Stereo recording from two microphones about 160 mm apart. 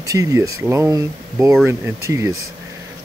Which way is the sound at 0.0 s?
20° right (ahead or behind).